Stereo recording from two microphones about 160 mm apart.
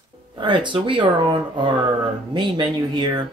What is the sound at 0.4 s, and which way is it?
Speech, 30° right (ahead or behind).